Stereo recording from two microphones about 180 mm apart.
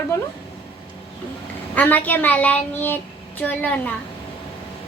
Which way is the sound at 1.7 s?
10° left (ahead or behind).